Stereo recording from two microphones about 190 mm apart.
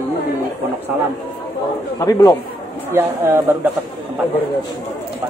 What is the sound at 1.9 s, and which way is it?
Speech, 20° left (ahead or behind).